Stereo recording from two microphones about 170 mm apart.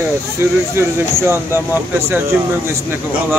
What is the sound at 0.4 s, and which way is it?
Speech, 15° right (ahead or behind).